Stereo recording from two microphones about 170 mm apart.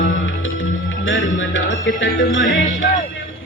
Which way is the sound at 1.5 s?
90° left.